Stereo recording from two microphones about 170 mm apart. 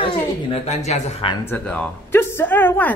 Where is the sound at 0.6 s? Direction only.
40° left (ahead or behind).